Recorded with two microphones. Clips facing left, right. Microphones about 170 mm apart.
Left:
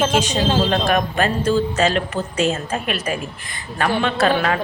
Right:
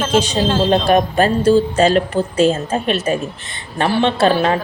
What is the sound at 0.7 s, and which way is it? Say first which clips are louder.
Speech: right 5 dB; 30° right (ahead or behind).